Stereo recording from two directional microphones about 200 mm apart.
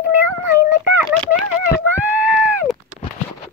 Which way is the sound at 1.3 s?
5° right (ahead or behind).